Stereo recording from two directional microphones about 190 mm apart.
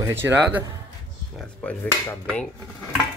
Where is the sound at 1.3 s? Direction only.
5° left (ahead or behind).